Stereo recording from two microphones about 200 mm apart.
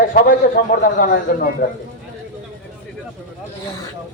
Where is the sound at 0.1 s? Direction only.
40° left (ahead or behind).